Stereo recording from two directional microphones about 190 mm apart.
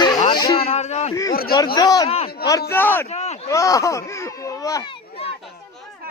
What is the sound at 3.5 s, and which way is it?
Speech, 15° left (ahead or behind).